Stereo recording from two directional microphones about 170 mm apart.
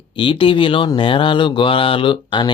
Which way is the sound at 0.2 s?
30° left (ahead or behind).